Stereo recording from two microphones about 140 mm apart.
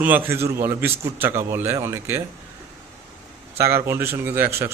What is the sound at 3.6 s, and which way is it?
A man's voice, 20° right (ahead or behind).